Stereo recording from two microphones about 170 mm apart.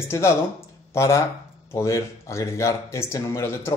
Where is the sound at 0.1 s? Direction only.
15° left (ahead or behind).